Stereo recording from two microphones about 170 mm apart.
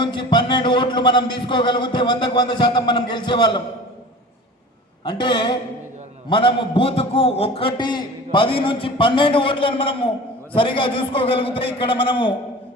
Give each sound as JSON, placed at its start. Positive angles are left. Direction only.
{"t": 0.0, "sound": "a man's voice", "side_deg": 30}
{"t": 5.0, "sound": "a man's voice", "side_deg": 25}